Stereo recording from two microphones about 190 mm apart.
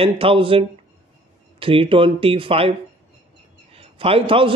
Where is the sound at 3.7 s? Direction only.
30° right (ahead or behind).